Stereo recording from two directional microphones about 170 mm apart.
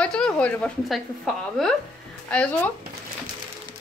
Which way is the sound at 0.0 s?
5° left (ahead or behind).